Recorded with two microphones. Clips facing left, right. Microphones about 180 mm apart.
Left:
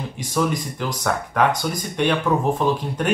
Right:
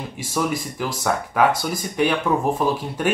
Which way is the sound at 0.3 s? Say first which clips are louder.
Left 2 dB; 5° right (ahead or behind).